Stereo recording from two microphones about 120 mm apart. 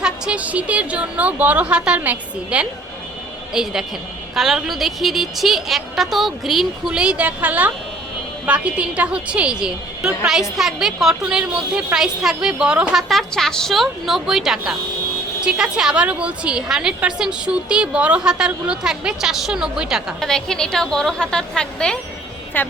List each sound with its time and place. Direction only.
0.0 s a woman's voice: 10° right (ahead or behind); by 22.7 s 15° left (ahead or behind)